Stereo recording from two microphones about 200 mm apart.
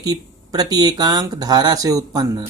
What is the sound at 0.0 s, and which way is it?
Speech, 20° right (ahead or behind).